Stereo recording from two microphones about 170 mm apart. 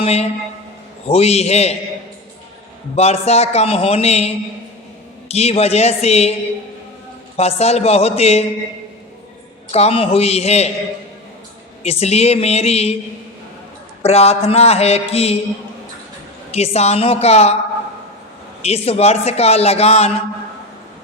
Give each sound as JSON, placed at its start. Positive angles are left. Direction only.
{"t": 0.0, "sound": "a man's voice", "side_deg": 40}
{"t": 2.9, "sound": "a man's voice", "side_deg": 40}
{"t": 5.3, "sound": "a man's voice", "side_deg": 40}
{"t": 7.3, "sound": "a man's voice", "side_deg": 40}
{"t": 9.7, "sound": "a man's voice", "side_deg": 35}
{"t": 11.8, "sound": "a man's voice", "side_deg": 40}
{"t": 14.0, "sound": "a man's voice", "side_deg": 35}
{"t": 16.5, "sound": "a man's voice", "side_deg": 35}
{"t": 18.6, "sound": "a man's voice", "side_deg": 35}